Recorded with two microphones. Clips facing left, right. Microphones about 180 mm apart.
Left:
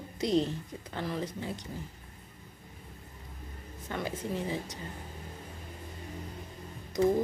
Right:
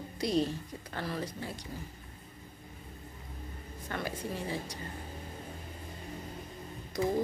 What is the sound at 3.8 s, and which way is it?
Speech, 20° left (ahead or behind).